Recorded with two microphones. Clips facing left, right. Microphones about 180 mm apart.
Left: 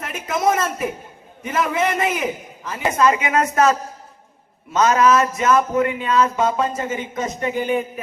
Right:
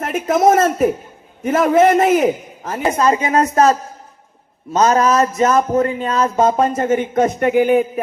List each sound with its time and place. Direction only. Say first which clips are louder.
0.0 s a man's voice: right 7 dB; 50° right (ahead or behind)
3.0 s speech: right 2 dB; 35° right (ahead or behind); by 7.9 s 55° right (ahead or behind)